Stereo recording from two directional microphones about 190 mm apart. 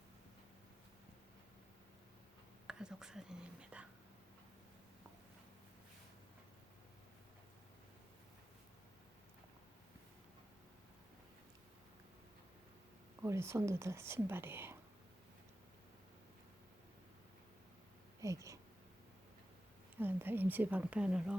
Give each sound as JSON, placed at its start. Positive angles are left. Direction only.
{"t": 2.6, "sound": "speech", "side_deg": -5}
{"t": 13.2, "sound": "speech", "side_deg": -15}
{"t": 18.2, "sound": "a sound", "side_deg": -15}
{"t": 20.0, "sound": "speech", "side_deg": -10}